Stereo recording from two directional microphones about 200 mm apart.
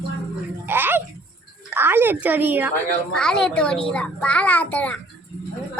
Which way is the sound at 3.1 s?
5° left (ahead or behind).